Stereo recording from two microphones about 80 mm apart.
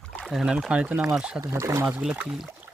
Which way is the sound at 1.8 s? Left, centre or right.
Right.